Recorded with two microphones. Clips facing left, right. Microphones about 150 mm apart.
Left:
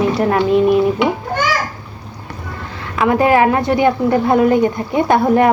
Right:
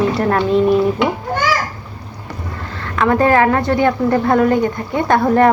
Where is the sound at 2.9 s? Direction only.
10° left (ahead or behind).